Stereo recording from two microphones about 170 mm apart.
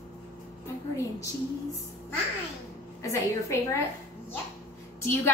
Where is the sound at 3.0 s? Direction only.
15° left (ahead or behind).